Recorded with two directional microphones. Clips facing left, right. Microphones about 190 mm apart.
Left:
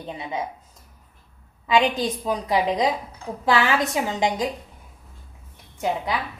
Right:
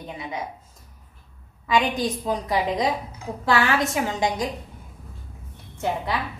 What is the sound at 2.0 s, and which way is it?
A woman's voice, 20° left (ahead or behind).